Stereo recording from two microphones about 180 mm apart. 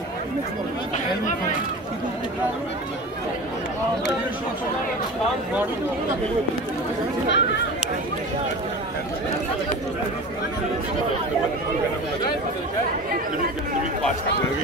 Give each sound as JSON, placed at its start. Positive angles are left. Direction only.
{"t": 7.2, "sound": "speech", "side_deg": 75}